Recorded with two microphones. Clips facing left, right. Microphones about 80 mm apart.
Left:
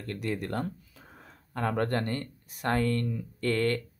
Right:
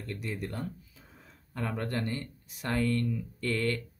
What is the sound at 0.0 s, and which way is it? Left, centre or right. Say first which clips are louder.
Speech: left 4 dB; left.